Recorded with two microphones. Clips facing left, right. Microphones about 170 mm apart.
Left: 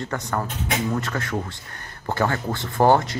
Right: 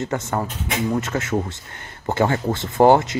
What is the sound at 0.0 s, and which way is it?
Speech, 20° right (ahead or behind).